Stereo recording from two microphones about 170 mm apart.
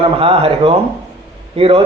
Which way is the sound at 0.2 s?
35° right (ahead or behind).